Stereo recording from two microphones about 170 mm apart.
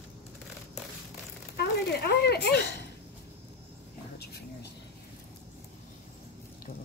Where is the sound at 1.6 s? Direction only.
75° left (ahead or behind).